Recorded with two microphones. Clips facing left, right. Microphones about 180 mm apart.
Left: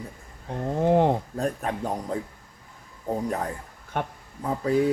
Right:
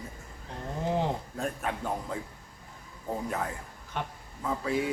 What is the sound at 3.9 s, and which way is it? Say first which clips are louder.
Speech: left 6 dB; 55° left (ahead or behind).